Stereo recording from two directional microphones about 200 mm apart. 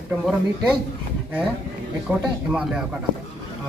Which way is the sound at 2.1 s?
5° right (ahead or behind).